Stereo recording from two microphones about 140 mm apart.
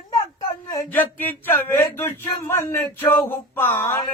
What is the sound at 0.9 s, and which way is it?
Speech, 15° left (ahead or behind).